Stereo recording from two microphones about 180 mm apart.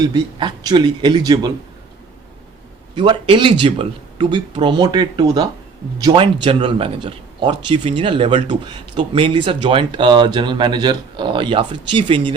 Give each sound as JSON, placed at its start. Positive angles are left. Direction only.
{"t": 0.0, "sound": "speech", "side_deg": -25}
{"t": 2.9, "sound": "speech", "side_deg": -25}